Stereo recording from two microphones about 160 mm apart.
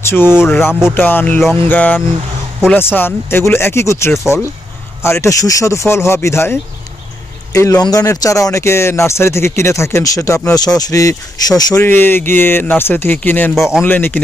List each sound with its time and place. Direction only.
0.0 s speech: 15° left (ahead or behind)
13.6 s speech: 5° right (ahead or behind)
13.8 s speech: 10° left (ahead or behind)